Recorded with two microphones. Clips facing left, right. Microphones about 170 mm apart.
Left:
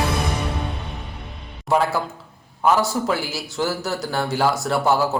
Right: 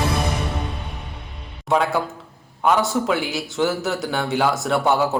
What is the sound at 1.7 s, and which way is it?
A man's voice, centre (ahead or behind).